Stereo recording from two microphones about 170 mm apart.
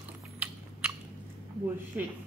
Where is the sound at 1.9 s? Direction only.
10° right (ahead or behind).